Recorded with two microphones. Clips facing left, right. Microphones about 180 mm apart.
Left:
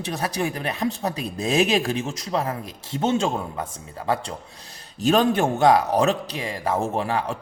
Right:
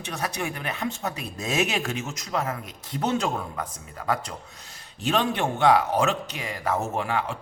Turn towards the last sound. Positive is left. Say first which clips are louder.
# left 3 dB
turn(degrees=40)  # may be behind; listen again after turning